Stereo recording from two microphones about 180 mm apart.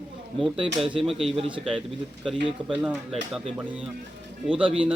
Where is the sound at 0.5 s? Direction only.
30° right (ahead or behind).